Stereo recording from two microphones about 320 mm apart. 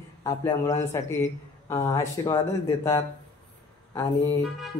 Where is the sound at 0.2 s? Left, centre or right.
Centre.